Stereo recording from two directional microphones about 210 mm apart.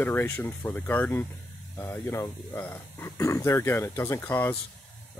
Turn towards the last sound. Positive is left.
turn(degrees=10)  # may be behind; listen again after turning